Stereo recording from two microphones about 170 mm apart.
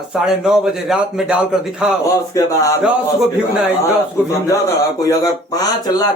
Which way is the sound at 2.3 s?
20° left (ahead or behind).